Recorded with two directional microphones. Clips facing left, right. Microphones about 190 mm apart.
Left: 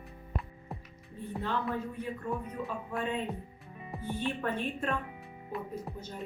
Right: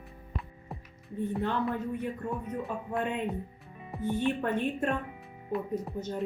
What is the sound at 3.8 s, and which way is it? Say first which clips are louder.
Music: right 1 dB; centre (ahead or behind).